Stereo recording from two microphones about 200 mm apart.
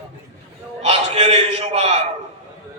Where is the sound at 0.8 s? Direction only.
35° right (ahead or behind).